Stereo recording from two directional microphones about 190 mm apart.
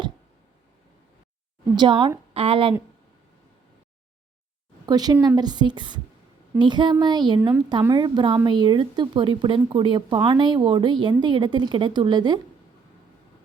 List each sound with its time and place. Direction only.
1.7 s speech: 25° right (ahead or behind)
4.9 s speech: 20° right (ahead or behind)